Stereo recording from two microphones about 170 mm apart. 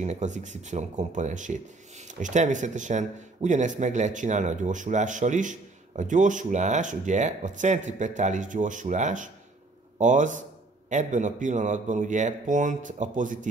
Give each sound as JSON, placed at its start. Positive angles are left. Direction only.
{"t": 0.0, "sound": "speech", "side_deg": -45}